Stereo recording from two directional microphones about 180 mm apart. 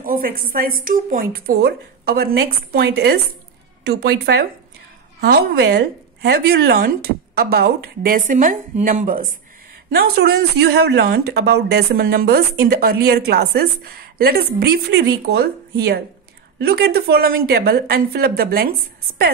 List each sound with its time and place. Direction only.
0.0 s speech: 55° right (ahead or behind)
16.5 s speech: 65° right (ahead or behind)